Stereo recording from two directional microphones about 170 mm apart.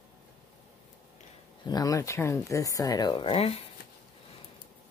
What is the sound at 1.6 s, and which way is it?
Speech, 20° left (ahead or behind).